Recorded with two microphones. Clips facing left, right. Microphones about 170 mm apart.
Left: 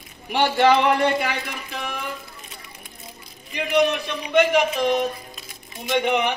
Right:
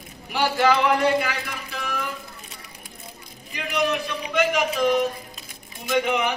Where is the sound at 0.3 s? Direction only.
25° left (ahead or behind).